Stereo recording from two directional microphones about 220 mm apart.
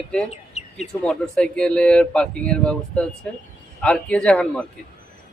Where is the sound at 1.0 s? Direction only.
5° left (ahead or behind).